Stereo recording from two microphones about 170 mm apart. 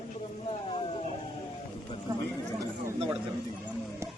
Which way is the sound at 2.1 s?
25° right (ahead or behind).